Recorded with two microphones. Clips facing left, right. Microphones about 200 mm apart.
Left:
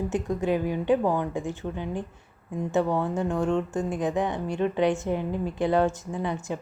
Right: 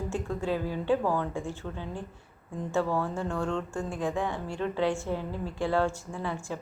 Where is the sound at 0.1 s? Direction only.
20° left (ahead or behind).